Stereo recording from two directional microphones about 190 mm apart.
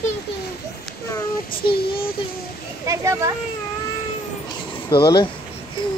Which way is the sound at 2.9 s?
15° right (ahead or behind).